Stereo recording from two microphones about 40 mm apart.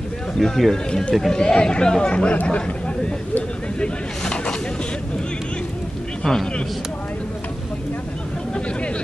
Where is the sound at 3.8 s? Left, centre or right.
Left.